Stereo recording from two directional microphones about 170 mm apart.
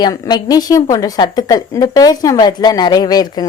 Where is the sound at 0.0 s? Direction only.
25° left (ahead or behind).